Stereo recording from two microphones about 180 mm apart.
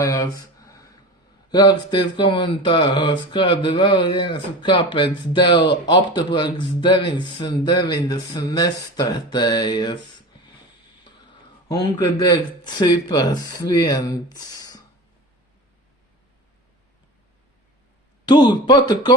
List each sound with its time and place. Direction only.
0.0 s speech: 20° left (ahead or behind)
0.6 s a sound: 20° left (ahead or behind)
1.5 s speech: 25° left (ahead or behind)
11.7 s speech: 25° left (ahead or behind)
18.3 s speech: 25° left (ahead or behind)